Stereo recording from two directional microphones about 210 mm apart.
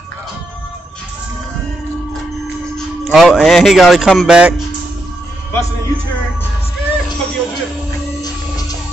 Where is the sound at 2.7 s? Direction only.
Centre (ahead or behind).